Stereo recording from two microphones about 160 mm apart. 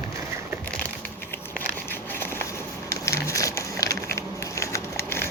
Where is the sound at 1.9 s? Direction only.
15° left (ahead or behind).